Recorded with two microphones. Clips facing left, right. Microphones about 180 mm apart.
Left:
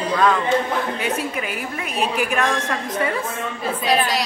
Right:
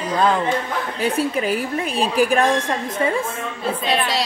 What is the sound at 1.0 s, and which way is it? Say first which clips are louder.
A woman's voice: right 4 dB; 30° right (ahead or behind).